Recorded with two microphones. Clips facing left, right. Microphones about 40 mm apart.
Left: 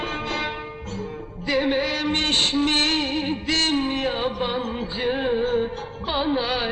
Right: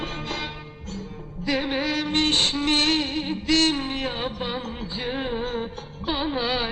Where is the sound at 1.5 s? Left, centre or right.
Left.